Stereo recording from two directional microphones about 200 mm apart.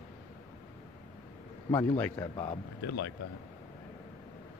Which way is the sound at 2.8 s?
60° left (ahead or behind).